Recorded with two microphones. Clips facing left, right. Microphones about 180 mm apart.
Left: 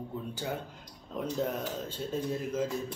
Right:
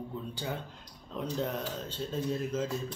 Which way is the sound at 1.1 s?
10° left (ahead or behind).